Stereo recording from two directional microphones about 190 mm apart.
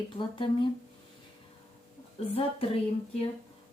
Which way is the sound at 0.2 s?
25° left (ahead or behind).